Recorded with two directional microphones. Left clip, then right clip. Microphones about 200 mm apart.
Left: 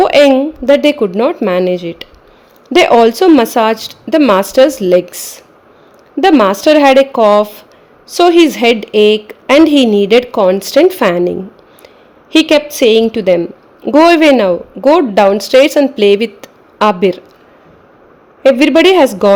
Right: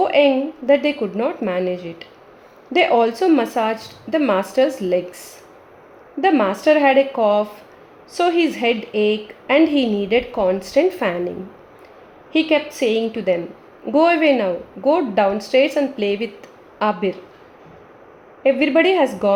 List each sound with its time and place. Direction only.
0.0 s a woman's voice: 60° left (ahead or behind)
18.4 s a woman's voice: 60° left (ahead or behind)